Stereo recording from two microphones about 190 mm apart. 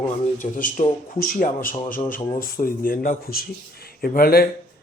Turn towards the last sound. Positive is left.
turn(degrees=50)  # may be behind; listen again after turning